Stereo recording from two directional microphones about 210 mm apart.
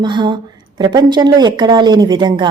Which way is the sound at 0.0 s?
20° right (ahead or behind).